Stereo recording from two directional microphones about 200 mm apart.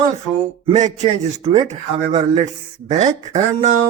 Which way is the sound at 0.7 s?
35° right (ahead or behind).